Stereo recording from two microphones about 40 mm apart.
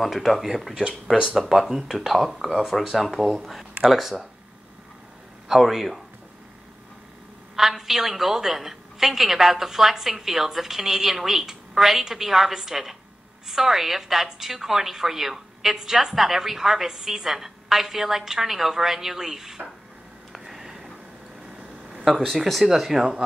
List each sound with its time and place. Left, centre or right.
0.0 s a woman's voice: centre
5.5 s speech: centre
7.5 s a woman's voice: centre
20.3 s a sound: centre
21.5 s a sound: right
22.7 s a woman's voice: centre